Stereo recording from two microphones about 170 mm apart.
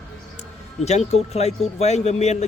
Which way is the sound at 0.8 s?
40° left (ahead or behind).